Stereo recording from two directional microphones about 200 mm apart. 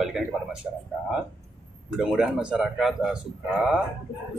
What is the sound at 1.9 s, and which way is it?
Speech, 5° right (ahead or behind).